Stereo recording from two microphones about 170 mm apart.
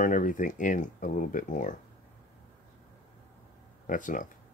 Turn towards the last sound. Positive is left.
turn(degrees=50)  # may be behind; listen again after turning